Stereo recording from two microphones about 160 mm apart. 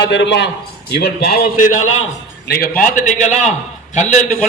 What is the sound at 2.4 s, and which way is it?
Speech, 70° left (ahead or behind).